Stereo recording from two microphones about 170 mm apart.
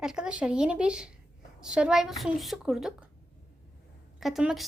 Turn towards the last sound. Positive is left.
turn(degrees=-5)  # may be behind; listen again after turning